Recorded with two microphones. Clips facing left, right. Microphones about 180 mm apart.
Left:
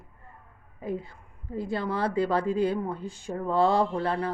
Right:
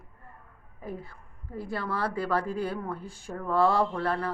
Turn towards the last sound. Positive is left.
turn(degrees=20)  # may be behind; listen again after turning